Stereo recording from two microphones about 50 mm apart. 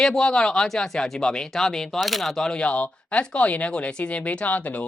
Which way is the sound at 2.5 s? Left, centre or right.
Left.